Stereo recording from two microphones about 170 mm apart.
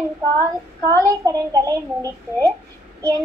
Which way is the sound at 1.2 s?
20° right (ahead or behind).